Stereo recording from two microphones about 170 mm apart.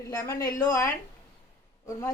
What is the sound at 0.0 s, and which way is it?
Speech, 15° left (ahead or behind).